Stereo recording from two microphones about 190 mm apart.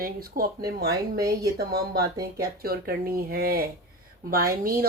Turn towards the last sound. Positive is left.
turn(degrees=-50)  # may be behind; listen again after turning